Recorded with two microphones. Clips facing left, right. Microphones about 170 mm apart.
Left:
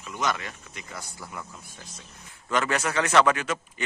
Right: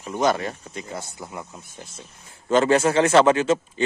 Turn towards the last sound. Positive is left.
turn(degrees=-25)  # may be behind; listen again after turning